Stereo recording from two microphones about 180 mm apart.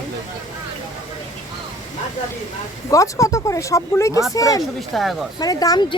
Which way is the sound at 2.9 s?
20° left (ahead or behind).